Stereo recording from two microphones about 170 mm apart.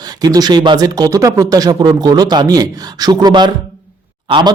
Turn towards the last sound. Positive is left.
turn(degrees=-25)  # may be behind; listen again after turning